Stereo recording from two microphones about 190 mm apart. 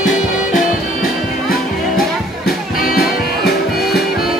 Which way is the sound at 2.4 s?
50° left (ahead or behind).